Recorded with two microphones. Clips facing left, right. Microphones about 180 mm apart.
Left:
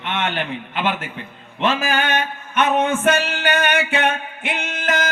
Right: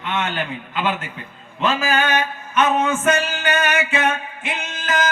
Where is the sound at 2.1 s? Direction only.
55° left (ahead or behind).